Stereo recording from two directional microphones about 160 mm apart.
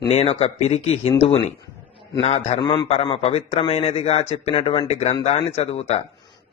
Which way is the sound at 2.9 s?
40° left (ahead or behind).